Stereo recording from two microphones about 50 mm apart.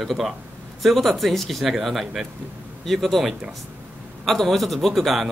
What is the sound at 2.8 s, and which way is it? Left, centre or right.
Speech, centre.